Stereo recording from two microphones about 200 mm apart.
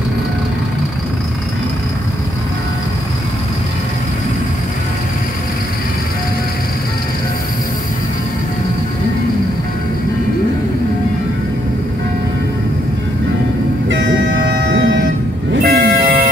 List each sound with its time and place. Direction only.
13.8 s vehicle: 65° right (ahead or behind)
15.6 s vehicle: 50° right (ahead or behind)